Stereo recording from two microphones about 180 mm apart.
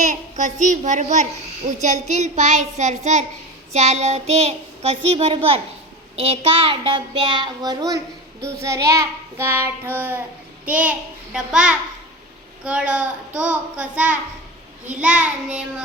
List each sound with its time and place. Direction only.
0.0 s a child's voice: 45° right (ahead or behind); by 15.6 s 5° right (ahead or behind)